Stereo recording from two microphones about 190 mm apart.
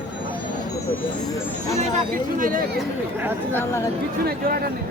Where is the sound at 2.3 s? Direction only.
45° right (ahead or behind).